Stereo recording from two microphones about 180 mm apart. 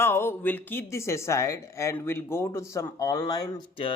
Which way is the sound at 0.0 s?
15° left (ahead or behind).